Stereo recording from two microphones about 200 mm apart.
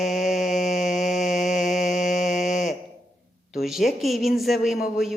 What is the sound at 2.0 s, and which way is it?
Mantra, 35° left (ahead or behind).